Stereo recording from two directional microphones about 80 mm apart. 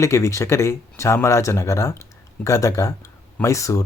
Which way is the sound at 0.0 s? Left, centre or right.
Left.